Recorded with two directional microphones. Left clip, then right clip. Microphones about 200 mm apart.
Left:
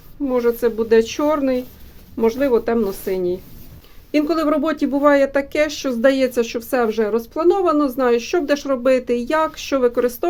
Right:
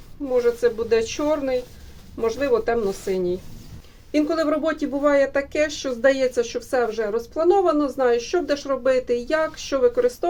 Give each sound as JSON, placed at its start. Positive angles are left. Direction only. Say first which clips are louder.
{"t": 0.3, "sound": "speech", "louder": "left 2 dB", "side_deg": 60}